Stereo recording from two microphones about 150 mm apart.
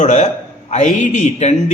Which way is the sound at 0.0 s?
55° left (ahead or behind).